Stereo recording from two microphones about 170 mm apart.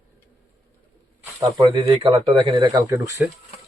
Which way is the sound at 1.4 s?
20° right (ahead or behind).